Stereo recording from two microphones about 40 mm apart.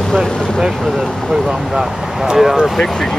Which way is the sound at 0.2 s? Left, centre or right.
Centre.